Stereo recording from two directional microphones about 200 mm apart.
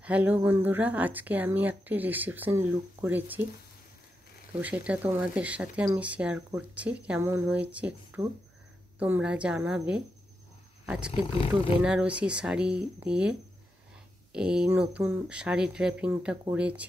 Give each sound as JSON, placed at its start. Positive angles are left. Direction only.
{"t": 0.0, "sound": "speech", "side_deg": -5}
{"t": 4.5, "sound": "speech", "side_deg": -10}
{"t": 11.1, "sound": "speech", "side_deg": 25}
{"t": 11.8, "sound": "speech", "side_deg": -5}